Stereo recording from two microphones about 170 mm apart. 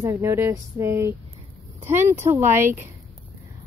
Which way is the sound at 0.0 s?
15° right (ahead or behind).